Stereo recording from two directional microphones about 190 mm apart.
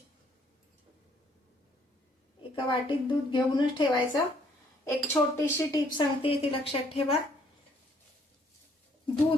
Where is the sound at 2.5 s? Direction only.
25° left (ahead or behind).